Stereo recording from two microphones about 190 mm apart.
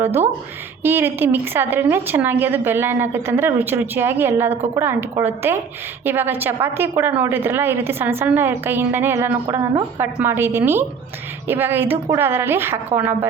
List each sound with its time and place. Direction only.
0.0 s a woman's voice: 10° right (ahead or behind)